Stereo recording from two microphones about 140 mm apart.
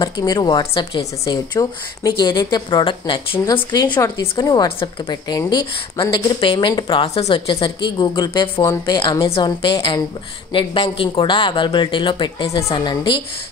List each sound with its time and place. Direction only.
0.0 s a woman's voice: 30° left (ahead or behind)
12.4 s a woman's voice: 20° left (ahead or behind)
12.7 s speech: 35° left (ahead or behind)